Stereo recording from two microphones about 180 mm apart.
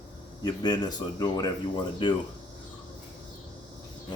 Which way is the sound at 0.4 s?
25° left (ahead or behind).